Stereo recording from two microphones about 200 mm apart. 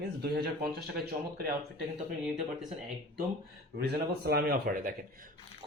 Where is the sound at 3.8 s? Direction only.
50° right (ahead or behind).